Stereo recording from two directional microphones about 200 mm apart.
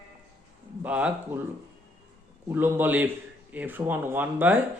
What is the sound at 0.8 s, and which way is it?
Speech, 5° right (ahead or behind).